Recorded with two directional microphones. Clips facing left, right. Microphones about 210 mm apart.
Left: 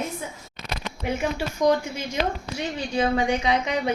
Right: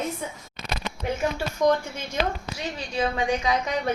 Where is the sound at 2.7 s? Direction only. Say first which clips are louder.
Left 4 dB; 30° left (ahead or behind).